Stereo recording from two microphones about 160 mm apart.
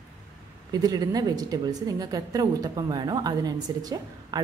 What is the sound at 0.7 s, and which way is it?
A woman's voice, 25° right (ahead or behind).